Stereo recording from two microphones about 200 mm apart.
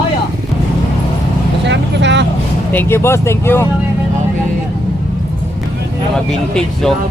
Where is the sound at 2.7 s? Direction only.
10° left (ahead or behind).